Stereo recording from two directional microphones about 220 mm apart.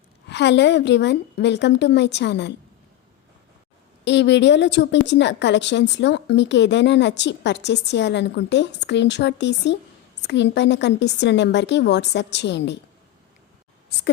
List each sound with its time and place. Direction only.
0.3 s a woman's voice: 50° left (ahead or behind)
4.0 s a woman's voice: 55° left (ahead or behind)